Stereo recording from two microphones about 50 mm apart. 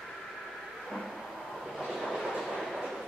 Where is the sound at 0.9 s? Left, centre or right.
Centre.